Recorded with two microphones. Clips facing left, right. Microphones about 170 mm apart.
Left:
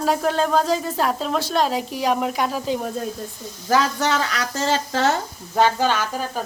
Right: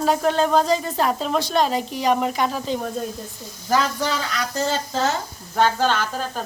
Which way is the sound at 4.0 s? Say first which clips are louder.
Left 2 dB; 85° left.